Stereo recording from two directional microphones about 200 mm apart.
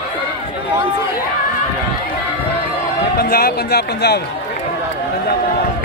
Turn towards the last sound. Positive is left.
turn(degrees=55)  # may be behind; listen again after turning